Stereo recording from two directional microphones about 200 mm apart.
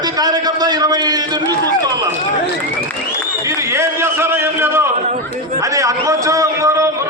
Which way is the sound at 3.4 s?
15° right (ahead or behind).